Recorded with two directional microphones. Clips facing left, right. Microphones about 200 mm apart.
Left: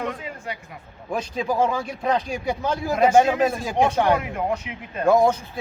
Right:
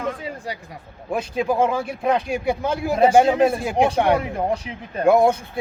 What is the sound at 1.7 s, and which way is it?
Speech, 5° right (ahead or behind).